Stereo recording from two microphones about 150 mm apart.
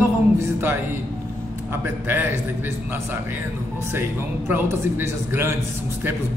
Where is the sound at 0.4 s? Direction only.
15° right (ahead or behind).